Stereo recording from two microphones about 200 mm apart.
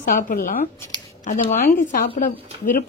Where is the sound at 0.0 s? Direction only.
45° left (ahead or behind).